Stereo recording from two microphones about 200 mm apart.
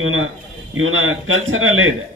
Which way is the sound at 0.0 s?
85° right.